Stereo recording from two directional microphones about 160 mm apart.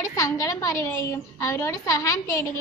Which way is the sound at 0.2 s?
20° left (ahead or behind).